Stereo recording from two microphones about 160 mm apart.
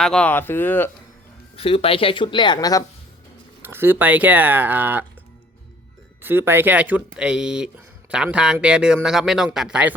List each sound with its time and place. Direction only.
0.0 s speech: 5° left (ahead or behind)
1.5 s speech: 35° left (ahead or behind)
3.6 s speech: 15° right (ahead or behind)
6.2 s speech: 15° right (ahead or behind)